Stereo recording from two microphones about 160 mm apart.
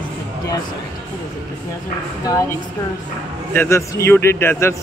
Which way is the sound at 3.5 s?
15° left (ahead or behind).